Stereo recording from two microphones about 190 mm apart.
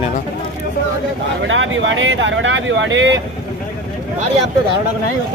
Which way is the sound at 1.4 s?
90° right.